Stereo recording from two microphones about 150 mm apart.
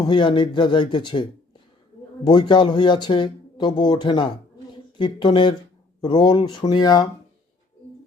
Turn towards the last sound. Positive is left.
turn(degrees=25)  # may be behind; listen again after turning